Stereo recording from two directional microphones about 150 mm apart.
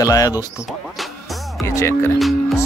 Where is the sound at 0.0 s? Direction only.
25° left (ahead or behind).